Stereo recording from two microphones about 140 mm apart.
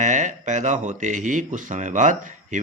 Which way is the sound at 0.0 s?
60° right (ahead or behind).